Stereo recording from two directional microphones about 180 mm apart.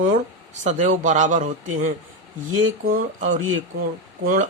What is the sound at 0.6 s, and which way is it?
Speech, 45° right (ahead or behind).